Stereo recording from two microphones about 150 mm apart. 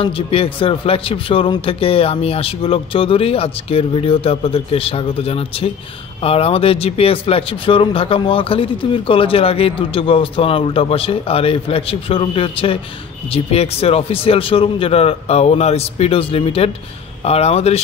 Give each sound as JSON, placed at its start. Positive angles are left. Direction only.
{"t": 0.0, "sound": "speech", "side_deg": 35}